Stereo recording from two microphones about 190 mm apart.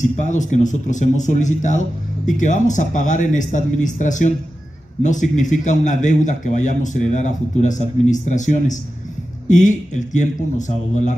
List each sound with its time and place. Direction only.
0.0 s speech: 40° left (ahead or behind)